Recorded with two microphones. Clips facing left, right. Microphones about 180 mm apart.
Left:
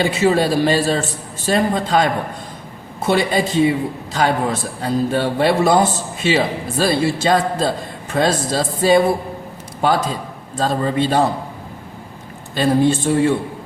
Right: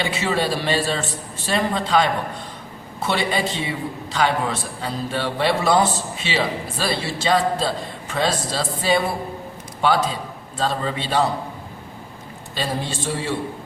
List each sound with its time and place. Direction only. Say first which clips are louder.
0.0 s a man's voice: left 7 dB; 45° left (ahead or behind)
3.1 s a man's voice: left 6 dB; 45° left (ahead or behind)
12.5 s a man's voice: left 11 dB; 55° left (ahead or behind)